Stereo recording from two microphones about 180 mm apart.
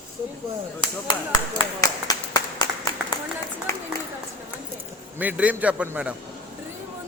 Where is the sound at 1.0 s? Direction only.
25° left (ahead or behind).